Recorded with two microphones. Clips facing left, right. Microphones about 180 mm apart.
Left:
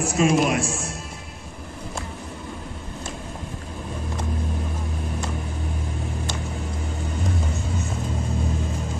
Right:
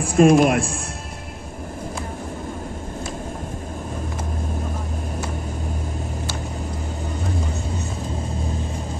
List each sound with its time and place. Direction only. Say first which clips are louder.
0.0 s speech: right 6 dB; 55° right (ahead or behind)